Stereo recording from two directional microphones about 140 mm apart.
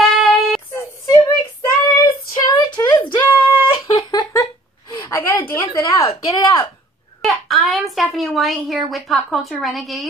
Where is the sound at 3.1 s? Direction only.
10° left (ahead or behind).